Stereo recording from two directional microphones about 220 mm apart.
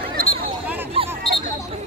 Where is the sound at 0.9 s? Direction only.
25° right (ahead or behind).